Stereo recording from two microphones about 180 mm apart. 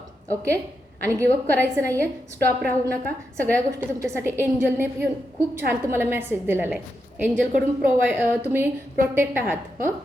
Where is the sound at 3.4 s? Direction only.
15° right (ahead or behind).